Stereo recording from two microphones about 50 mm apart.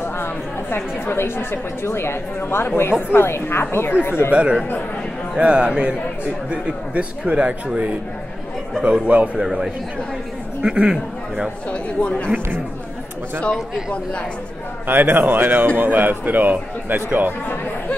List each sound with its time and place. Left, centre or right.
0.0 s a woman's voice: left
4.3 s a man's voice: right
11.7 s speech: left
14.9 s a man's voice: right